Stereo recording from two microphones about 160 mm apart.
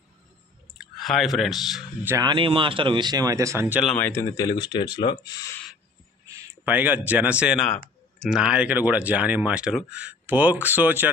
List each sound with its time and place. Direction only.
0.7 s speech: centre (ahead or behind)
2.0 s speech: 20° right (ahead or behind)
2.3 s speech: 30° right (ahead or behind); by 3.8 s 15° right (ahead or behind)
3.8 s speech: 5° left (ahead or behind)
4.1 s speech: 20° left (ahead or behind)
6.2 s a sound: 15° right (ahead or behind)
7.1 s speech: 10° right (ahead or behind)